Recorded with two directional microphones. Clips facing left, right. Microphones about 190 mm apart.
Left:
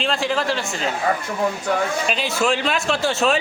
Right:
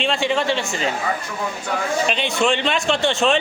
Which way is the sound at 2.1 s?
5° left (ahead or behind).